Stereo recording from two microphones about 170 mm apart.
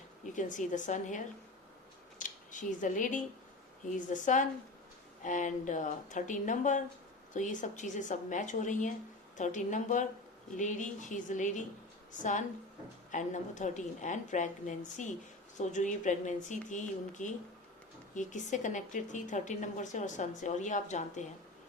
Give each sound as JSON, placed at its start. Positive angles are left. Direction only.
{"t": 0.3, "sound": "a woman's voice", "side_deg": 50}
{"t": 2.1, "sound": "a sound", "side_deg": 50}
{"t": 3.9, "sound": "a woman's voice", "side_deg": 50}